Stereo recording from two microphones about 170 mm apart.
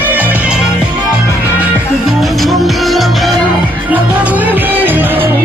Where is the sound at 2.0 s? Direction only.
Centre (ahead or behind).